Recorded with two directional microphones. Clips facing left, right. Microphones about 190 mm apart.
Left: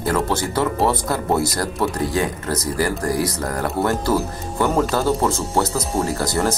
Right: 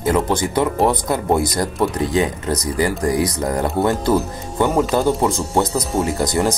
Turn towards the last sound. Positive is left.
turn(degrees=-20)  # may be behind; listen again after turning